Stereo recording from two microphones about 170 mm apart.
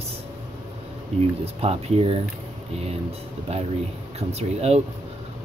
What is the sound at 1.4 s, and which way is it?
Speech, 35° right (ahead or behind).